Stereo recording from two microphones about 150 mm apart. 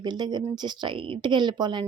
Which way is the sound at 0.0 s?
30° right (ahead or behind).